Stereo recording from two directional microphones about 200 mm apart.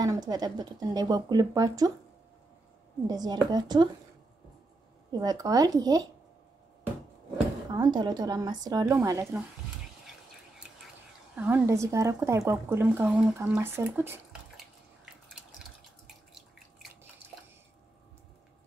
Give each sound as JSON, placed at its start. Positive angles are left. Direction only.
{"t": 0.0, "sound": "speech", "side_deg": -20}
{"t": 3.1, "sound": "speech", "side_deg": -20}
{"t": 5.2, "sound": "speech", "side_deg": -20}
{"t": 7.7, "sound": "speech", "side_deg": -20}
{"t": 11.3, "sound": "speech", "side_deg": -10}